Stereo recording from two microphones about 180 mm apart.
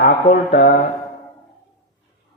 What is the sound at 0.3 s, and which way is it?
Speech, 50° left (ahead or behind).